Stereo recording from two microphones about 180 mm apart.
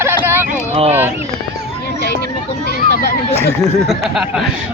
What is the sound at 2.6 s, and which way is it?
Children playing, 60° left (ahead or behind).